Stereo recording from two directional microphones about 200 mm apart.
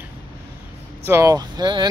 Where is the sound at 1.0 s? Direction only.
15° right (ahead or behind).